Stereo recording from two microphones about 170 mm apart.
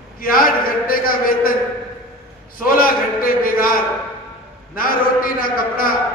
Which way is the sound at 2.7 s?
55° left (ahead or behind).